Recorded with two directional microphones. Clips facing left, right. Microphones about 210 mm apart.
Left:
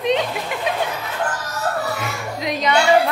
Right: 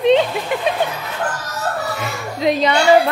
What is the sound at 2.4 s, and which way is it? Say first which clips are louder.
Speech: right 6 dB; 30° right (ahead or behind).